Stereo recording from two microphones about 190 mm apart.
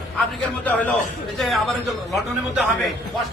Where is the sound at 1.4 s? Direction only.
Centre (ahead or behind).